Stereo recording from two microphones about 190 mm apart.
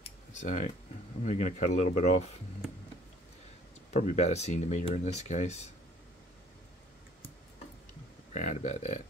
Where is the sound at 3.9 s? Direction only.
35° left (ahead or behind).